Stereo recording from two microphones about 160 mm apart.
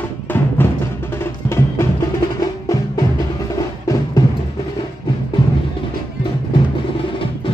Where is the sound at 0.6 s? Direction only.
15° left (ahead or behind).